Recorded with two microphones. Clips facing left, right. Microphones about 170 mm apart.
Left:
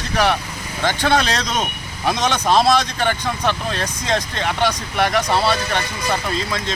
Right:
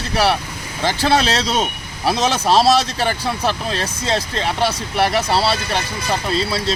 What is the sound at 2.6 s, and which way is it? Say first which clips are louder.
Speech: right 2 dB; 5° right (ahead or behind).